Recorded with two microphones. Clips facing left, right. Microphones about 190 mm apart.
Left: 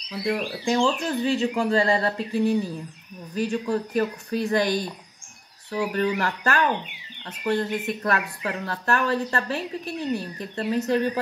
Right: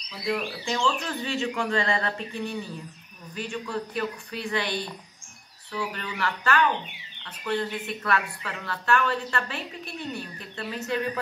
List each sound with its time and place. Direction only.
0.7 s speech: 35° left (ahead or behind)